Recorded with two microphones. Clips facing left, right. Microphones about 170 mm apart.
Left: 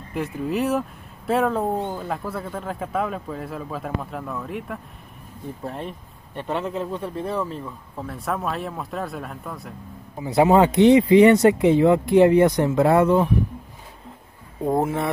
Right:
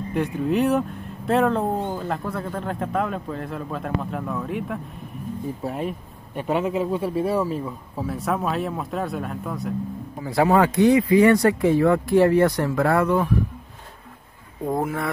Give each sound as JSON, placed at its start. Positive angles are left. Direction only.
{"t": 0.1, "sound": "speech", "side_deg": 0}
{"t": 10.2, "sound": "speech", "side_deg": 20}
{"t": 14.7, "sound": "speech", "side_deg": 25}